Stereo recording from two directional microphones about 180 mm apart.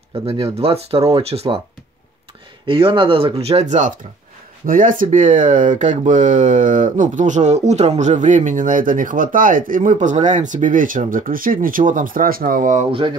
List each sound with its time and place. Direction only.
0.3 s speech: 35° right (ahead or behind)
2.6 s speech: 30° right (ahead or behind); by 12.8 s 50° right (ahead or behind)